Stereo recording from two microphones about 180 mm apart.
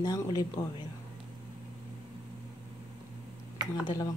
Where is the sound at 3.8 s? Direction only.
20° left (ahead or behind).